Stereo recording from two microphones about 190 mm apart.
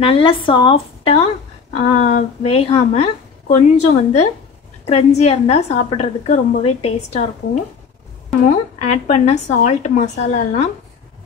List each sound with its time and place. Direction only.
0.0 s a woman's voice: 30° left (ahead or behind)